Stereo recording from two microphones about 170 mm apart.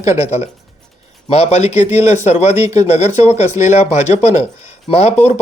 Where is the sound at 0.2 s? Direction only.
40° left (ahead or behind).